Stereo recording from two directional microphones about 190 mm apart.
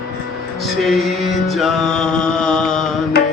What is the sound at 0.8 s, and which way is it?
Music, centre (ahead or behind).